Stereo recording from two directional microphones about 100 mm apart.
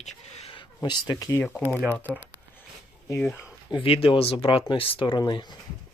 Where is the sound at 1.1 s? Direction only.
35° left (ahead or behind).